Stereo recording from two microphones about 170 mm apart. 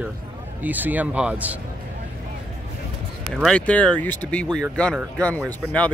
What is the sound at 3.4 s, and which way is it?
Speech, 5° left (ahead or behind).